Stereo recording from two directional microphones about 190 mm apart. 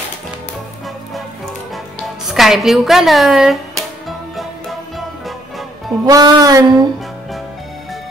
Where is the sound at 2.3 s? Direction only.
Centre (ahead or behind).